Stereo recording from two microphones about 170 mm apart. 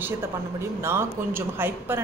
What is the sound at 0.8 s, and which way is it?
A woman's voice, 15° right (ahead or behind).